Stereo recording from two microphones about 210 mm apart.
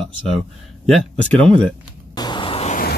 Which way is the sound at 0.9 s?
5° left (ahead or behind).